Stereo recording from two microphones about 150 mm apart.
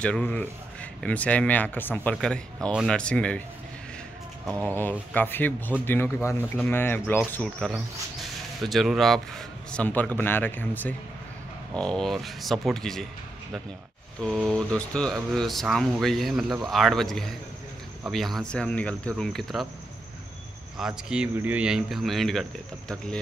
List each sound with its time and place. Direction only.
0.0 s a man's voice: 10° left (ahead or behind)
4.5 s speech: 15° right (ahead or behind)
5.1 s a man's voice: 10° left (ahead or behind)
14.2 s speech: centre (ahead or behind)
20.7 s speech: 5° right (ahead or behind)